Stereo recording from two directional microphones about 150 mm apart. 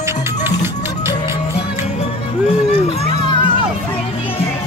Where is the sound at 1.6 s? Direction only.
45° left (ahead or behind).